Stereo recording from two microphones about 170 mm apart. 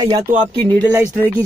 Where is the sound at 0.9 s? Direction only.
10° right (ahead or behind).